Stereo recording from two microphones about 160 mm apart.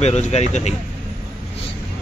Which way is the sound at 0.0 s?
45° left (ahead or behind).